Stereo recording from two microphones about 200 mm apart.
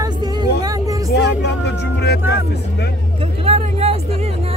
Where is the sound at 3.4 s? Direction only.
30° right (ahead or behind).